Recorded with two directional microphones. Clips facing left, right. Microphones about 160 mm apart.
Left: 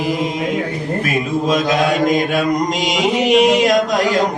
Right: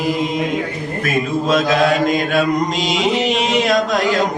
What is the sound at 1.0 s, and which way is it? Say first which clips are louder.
Speech: right 2 dB; 15° left (ahead or behind).